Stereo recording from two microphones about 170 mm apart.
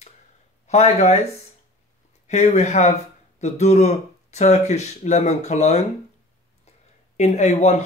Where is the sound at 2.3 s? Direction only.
40° left (ahead or behind).